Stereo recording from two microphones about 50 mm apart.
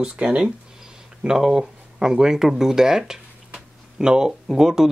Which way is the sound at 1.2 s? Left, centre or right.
Centre.